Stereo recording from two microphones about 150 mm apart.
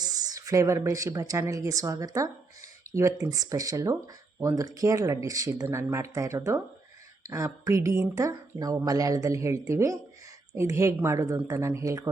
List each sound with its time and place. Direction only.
0.0 s speech: 25° right (ahead or behind)